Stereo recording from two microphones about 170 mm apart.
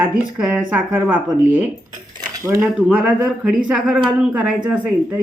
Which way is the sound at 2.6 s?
5° right (ahead or behind).